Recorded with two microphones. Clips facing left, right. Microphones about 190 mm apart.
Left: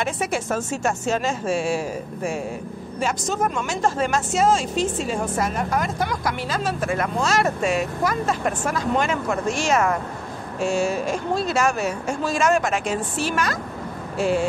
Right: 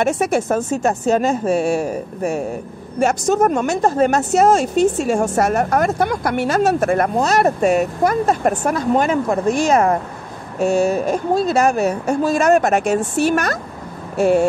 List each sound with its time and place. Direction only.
0.2 s speech: 60° right (ahead or behind)
0.8 s a woman's voice: 40° right (ahead or behind)
5.6 s speech: 65° right (ahead or behind)
6.8 s a woman's voice: 45° right (ahead or behind)